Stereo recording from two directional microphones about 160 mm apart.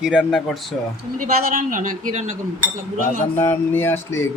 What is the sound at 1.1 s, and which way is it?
A woman's voice, 55° right (ahead or behind).